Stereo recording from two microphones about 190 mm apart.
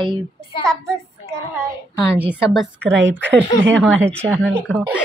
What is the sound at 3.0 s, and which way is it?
Speech, 70° right (ahead or behind).